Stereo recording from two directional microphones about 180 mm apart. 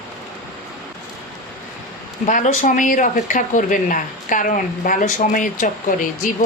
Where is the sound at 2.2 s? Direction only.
45° left (ahead or behind).